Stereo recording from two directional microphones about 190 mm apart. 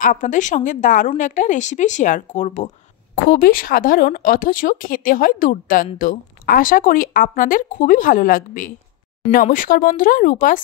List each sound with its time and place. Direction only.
0.0 s a woman's voice: 45° left (ahead or behind)
3.3 s speech: 50° left (ahead or behind)